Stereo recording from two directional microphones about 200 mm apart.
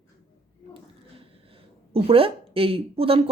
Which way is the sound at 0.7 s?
25° right (ahead or behind).